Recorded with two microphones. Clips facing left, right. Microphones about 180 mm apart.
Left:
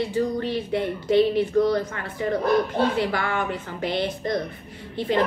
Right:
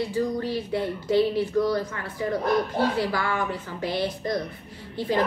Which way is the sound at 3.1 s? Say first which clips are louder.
Left 1 dB; 60° left (ahead or behind).